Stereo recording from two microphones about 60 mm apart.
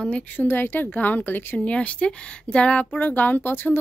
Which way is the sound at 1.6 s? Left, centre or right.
Left.